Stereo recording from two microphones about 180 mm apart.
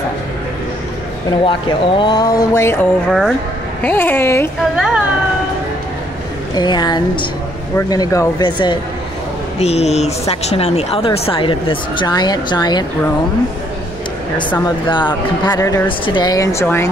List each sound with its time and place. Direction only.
1.4 s speech: 25° left (ahead or behind)
3.1 s speech: centre (ahead or behind)
4.7 s speech: 5° right (ahead or behind)
6.5 s speech: 25° left (ahead or behind)
9.6 s speech: 35° left (ahead or behind)
14.9 s speech: 25° left (ahead or behind)